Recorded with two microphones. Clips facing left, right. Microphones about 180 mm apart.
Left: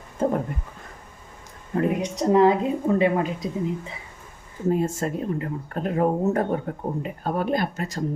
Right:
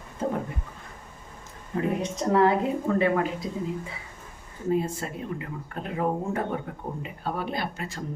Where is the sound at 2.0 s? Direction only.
15° left (ahead or behind).